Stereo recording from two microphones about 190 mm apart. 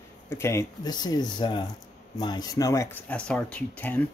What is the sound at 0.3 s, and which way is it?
Speech, 15° left (ahead or behind).